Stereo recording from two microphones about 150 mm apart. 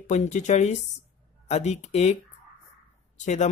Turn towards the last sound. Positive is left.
turn(degrees=50)  # may be behind; listen again after turning